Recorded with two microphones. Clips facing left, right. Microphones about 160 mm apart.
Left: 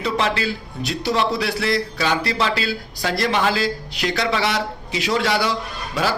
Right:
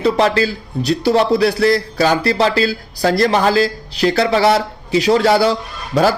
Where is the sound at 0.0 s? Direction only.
40° right (ahead or behind).